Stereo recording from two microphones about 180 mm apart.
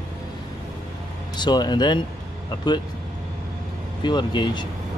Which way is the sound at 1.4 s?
25° left (ahead or behind).